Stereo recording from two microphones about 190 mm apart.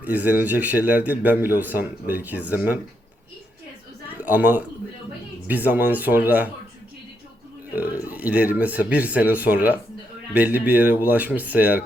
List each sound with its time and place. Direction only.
0.0 s a man's voice: 10° right (ahead or behind)
4.2 s a man's voice: 10° right (ahead or behind)
8.0 s a man's voice: 10° right (ahead or behind)